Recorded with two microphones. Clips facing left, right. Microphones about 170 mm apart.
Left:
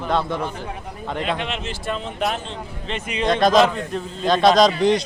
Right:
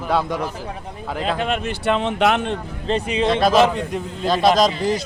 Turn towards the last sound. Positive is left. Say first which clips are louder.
# left 2 dB
turn(degrees=-5)  # may be behind; listen again after turning